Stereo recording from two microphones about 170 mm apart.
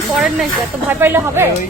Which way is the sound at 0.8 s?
15° right (ahead or behind).